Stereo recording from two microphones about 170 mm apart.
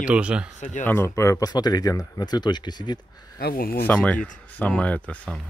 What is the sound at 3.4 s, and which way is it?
Speech, 65° left (ahead or behind).